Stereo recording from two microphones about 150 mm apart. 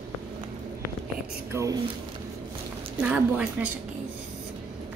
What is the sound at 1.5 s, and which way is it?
Speech, 20° right (ahead or behind).